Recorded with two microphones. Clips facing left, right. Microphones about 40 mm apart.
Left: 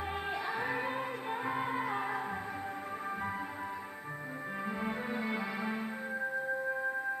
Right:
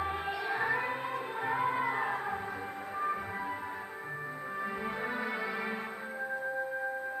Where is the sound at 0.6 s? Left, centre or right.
Right.